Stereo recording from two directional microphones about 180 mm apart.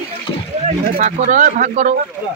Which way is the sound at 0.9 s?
40° right (ahead or behind).